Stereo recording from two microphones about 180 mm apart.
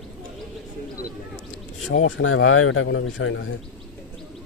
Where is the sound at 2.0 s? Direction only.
90° left.